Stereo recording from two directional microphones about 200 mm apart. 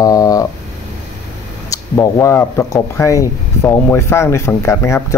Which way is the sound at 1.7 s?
15° left (ahead or behind).